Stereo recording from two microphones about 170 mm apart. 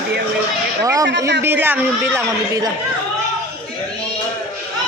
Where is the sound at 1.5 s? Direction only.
10° right (ahead or behind).